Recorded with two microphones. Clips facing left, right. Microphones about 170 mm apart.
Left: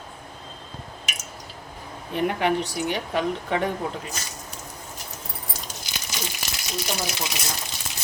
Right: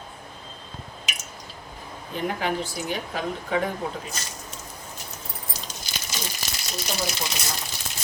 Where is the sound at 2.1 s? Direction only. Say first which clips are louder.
Left 4 dB; 70° left (ahead or behind).